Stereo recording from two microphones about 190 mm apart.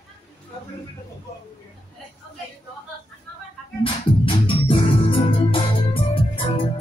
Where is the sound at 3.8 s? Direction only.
25° left (ahead or behind).